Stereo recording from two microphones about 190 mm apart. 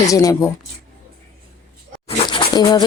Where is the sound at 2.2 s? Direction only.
25° left (ahead or behind).